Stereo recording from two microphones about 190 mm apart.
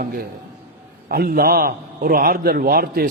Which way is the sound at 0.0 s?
50° right (ahead or behind).